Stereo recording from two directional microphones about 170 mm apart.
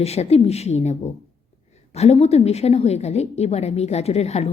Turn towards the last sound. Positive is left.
turn(degrees=40)  # may be behind; listen again after turning